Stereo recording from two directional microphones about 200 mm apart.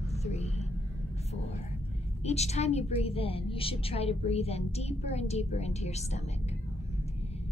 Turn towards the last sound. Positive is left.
turn(degrees=35)  # may be behind; listen again after turning